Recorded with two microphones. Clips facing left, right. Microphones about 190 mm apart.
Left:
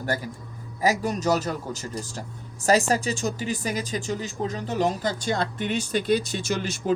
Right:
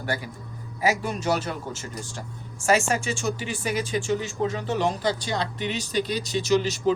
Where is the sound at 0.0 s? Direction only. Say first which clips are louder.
Left 2 dB; 40° left (ahead or behind).